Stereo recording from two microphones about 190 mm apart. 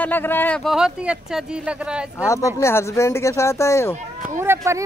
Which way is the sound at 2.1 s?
15° left (ahead or behind).